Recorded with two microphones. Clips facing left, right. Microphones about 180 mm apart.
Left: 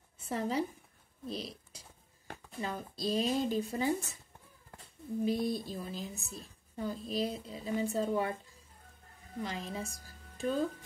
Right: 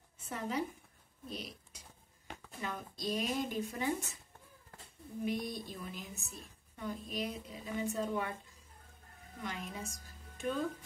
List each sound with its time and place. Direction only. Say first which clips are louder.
0.3 s a woman's voice: left 4 dB; 35° left (ahead or behind)
5.2 s a woman's voice: left 5 dB; 30° left (ahead or behind)
9.4 s a woman's voice: left 4 dB; 30° left (ahead or behind)